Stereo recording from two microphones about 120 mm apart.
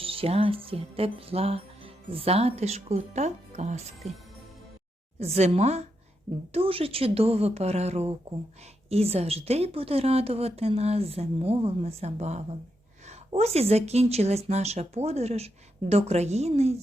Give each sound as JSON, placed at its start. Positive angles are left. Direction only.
{"t": 0.0, "sound": "speech", "side_deg": -50}
{"t": 5.2, "sound": "a woman's voice", "side_deg": -60}
{"t": 6.5, "sound": "a woman's voice", "side_deg": -50}